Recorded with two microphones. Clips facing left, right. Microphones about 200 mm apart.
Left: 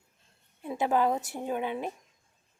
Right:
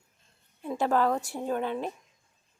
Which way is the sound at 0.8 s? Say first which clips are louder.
Right 1 dB; 15° left (ahead or behind).